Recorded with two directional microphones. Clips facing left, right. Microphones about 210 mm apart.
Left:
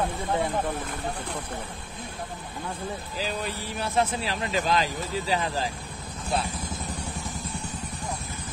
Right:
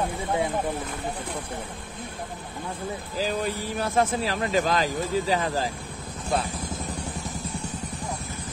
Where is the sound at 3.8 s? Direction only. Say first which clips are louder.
Right 2 dB; 45° right (ahead or behind).